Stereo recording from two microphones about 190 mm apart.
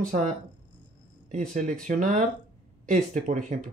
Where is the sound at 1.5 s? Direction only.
45° right (ahead or behind).